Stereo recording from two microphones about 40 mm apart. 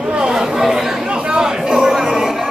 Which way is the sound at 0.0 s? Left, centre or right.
Right.